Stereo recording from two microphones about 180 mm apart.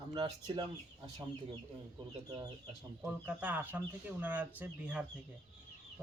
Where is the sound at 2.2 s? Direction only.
20° right (ahead or behind).